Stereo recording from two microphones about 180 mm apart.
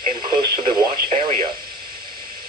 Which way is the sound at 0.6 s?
35° right (ahead or behind).